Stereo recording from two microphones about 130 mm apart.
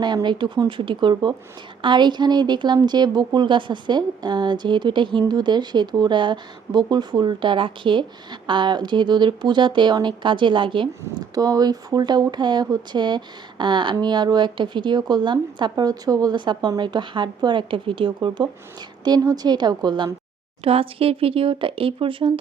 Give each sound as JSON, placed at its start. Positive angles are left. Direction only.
{"t": 0.0, "sound": "speech", "side_deg": -35}
{"t": 20.7, "sound": "speech", "side_deg": -45}